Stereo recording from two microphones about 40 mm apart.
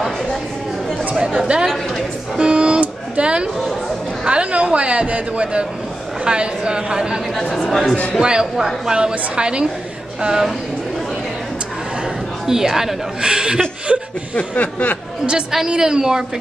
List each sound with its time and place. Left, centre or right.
1.5 s a woman's voice: right
2.3 s a sound: right
3.2 s speech: right
7.5 s speech: centre
8.2 s speech: right
8.5 s a woman's voice: centre
9.3 s speech: right
12.4 s a woman's voice: centre
13.9 s chuckle: right
14.3 s speech: left
15.5 s a woman's voice: centre